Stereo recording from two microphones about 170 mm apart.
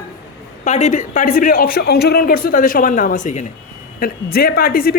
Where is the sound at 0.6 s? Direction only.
40° left (ahead or behind).